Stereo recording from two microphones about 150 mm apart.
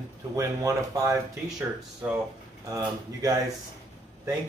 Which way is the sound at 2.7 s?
25° right (ahead or behind).